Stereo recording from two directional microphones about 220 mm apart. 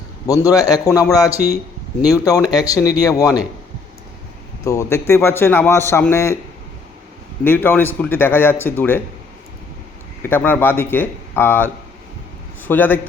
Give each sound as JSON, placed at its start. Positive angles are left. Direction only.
{"t": 0.3, "sound": "a man's voice", "side_deg": 15}
{"t": 4.6, "sound": "a man's voice", "side_deg": 15}
{"t": 7.4, "sound": "a man's voice", "side_deg": 10}
{"t": 10.2, "sound": "a man's voice", "side_deg": 10}